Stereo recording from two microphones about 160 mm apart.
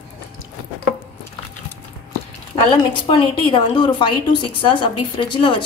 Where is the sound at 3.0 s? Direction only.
30° left (ahead or behind).